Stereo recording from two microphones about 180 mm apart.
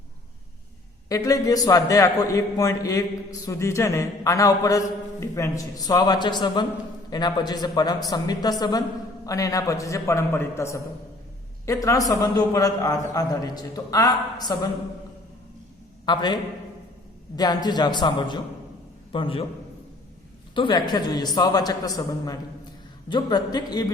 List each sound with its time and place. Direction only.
1.0 s a man's voice: 20° left (ahead or behind)
16.0 s a man's voice: 25° left (ahead or behind)
20.6 s a man's voice: 25° left (ahead or behind)